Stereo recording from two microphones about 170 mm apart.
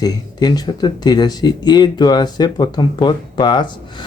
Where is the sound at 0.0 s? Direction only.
25° left (ahead or behind).